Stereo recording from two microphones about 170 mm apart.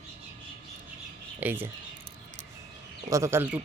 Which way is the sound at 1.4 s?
10° right (ahead or behind).